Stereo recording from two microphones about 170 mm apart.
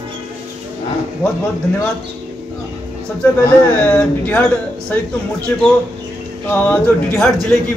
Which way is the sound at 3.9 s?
10° left (ahead or behind).